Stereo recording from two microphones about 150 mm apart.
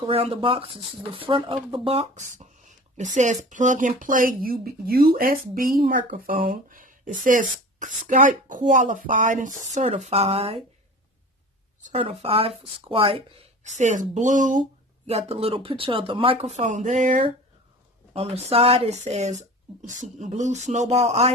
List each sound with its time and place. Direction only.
0.0 s speech: 40° right (ahead or behind)
3.0 s speech: 55° right (ahead or behind)
12.0 s speech: 40° right (ahead or behind)
13.7 s speech: 55° right (ahead or behind)
15.0 s speech: 40° right (ahead or behind); by 17.2 s 55° right (ahead or behind)
18.1 s speech: 40° right (ahead or behind)